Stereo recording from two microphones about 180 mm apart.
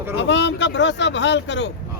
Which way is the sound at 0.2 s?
85° left.